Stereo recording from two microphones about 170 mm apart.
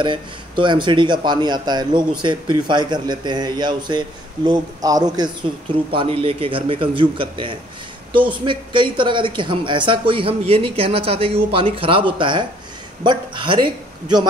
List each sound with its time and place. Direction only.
0.0 s a man's voice: 30° right (ahead or behind)